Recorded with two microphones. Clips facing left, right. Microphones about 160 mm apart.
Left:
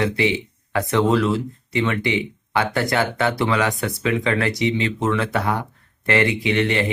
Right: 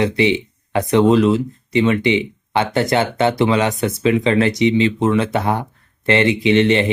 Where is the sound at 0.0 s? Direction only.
20° right (ahead or behind).